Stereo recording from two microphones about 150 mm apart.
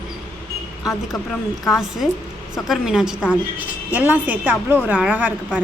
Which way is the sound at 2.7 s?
5° right (ahead or behind).